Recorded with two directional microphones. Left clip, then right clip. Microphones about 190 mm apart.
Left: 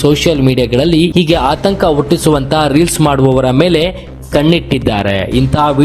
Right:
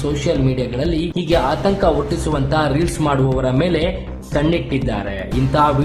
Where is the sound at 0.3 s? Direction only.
40° left (ahead or behind).